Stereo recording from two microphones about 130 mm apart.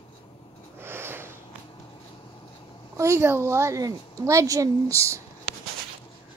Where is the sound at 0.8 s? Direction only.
15° right (ahead or behind).